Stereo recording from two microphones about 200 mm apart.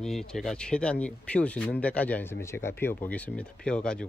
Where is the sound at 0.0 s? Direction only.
Centre (ahead or behind).